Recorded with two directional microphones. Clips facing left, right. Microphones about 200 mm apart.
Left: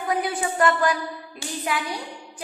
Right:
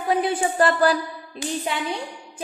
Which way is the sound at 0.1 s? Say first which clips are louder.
Right 4 dB; 25° right (ahead or behind).